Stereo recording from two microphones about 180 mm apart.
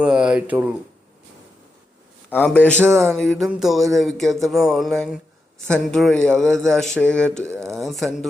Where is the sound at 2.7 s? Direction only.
15° right (ahead or behind).